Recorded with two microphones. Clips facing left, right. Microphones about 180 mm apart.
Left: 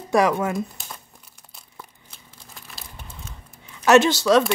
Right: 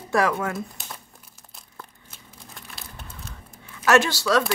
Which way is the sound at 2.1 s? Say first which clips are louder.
Right 2 dB; centre (ahead or behind).